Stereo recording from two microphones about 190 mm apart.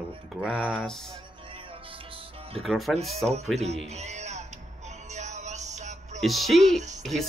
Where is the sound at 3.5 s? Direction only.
35° right (ahead or behind).